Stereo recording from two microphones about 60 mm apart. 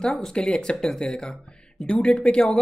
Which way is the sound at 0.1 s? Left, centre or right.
Centre.